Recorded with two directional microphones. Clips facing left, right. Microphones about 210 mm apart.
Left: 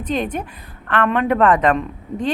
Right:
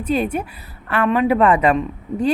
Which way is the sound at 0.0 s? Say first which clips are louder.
Right 2 dB; 10° right (ahead or behind).